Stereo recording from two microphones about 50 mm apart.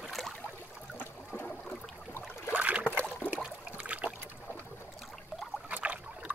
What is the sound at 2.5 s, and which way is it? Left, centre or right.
Boat, right.